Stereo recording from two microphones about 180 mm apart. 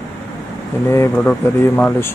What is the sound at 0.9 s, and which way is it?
Speech, 15° left (ahead or behind).